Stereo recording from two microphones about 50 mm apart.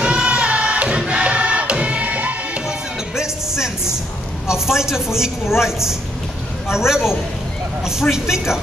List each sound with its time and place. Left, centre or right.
0.0 s music: centre
3.2 s music: centre
4.5 s a man's voice: centre